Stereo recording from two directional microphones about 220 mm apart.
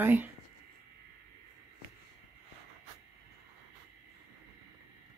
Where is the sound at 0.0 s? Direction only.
10° right (ahead or behind).